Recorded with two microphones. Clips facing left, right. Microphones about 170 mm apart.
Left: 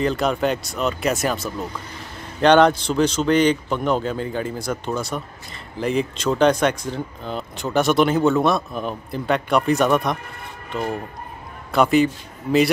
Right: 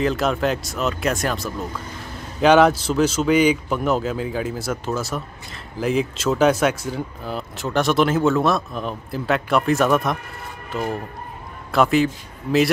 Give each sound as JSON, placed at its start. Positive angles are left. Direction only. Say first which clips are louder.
{"t": 0.0, "sound": "a man's voice", "louder": "even", "side_deg": 0}